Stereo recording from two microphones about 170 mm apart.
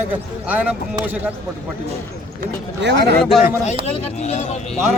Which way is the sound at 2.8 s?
90° right.